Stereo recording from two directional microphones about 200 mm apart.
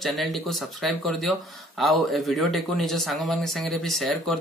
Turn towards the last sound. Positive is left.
turn(degrees=0)  # may be behind; listen again after turning